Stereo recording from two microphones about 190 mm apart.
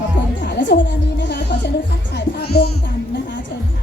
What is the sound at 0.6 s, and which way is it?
Music, 70° left (ahead or behind).